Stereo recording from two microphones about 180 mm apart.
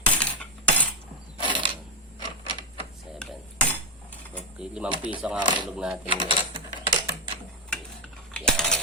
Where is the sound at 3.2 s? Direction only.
5° left (ahead or behind).